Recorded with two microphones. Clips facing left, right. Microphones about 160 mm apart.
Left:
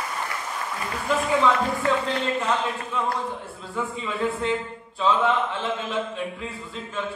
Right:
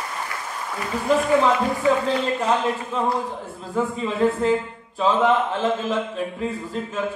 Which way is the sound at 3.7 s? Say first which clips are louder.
Right 6 dB; 40° right (ahead or behind).